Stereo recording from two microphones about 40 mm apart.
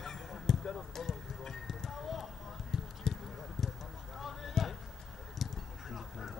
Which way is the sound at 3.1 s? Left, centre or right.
Centre.